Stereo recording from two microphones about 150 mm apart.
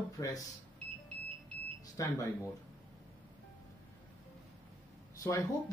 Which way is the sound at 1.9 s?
20° left (ahead or behind).